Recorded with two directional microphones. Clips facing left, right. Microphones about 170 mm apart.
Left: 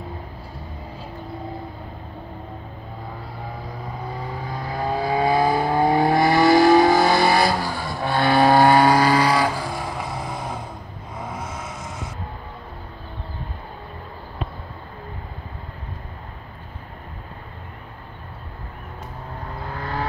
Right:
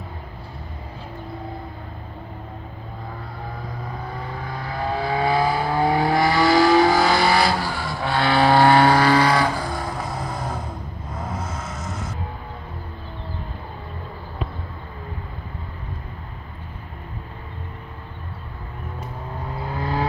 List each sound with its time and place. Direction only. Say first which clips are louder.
4.8 s vehicle: left 1 dB; 15° left (ahead or behind); by 11.5 s centre (ahead or behind)
11.5 s vehicle: right 1 dB; 10° left (ahead or behind)
19.7 s vehicle: right 4 dB; 15° right (ahead or behind)